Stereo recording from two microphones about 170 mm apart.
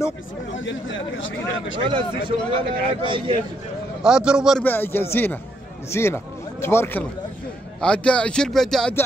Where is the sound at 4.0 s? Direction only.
5° right (ahead or behind).